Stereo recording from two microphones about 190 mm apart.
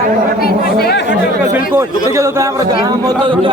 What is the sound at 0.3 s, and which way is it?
Chatter, 55° left (ahead or behind).